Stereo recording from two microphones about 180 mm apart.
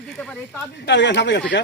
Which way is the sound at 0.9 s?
75° left (ahead or behind).